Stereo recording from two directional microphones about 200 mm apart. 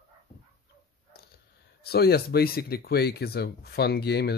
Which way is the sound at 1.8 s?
50° left (ahead or behind).